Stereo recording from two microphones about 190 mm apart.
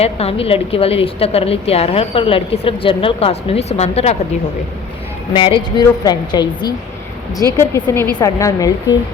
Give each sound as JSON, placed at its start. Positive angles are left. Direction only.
{"t": 0.0, "sound": "a woman's voice", "side_deg": 30}
{"t": 5.3, "sound": "a woman's voice", "side_deg": 25}